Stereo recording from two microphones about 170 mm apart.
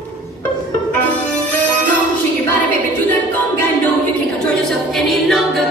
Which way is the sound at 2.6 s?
10° left (ahead or behind).